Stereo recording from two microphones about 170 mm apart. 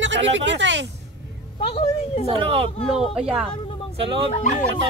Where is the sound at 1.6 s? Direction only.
35° left (ahead or behind).